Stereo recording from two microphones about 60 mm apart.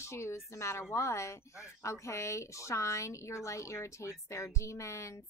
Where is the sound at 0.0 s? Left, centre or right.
Left.